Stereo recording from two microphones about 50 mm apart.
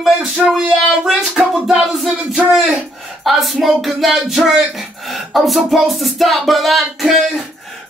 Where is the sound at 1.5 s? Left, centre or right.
Centre.